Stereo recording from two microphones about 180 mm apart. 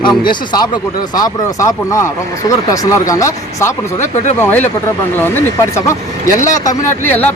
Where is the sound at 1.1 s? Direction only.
20° left (ahead or behind).